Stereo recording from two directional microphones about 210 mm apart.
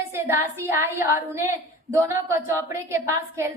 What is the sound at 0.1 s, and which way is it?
Speech, 10° right (ahead or behind).